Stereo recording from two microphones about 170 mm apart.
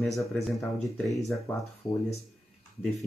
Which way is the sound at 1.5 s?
15° left (ahead or behind).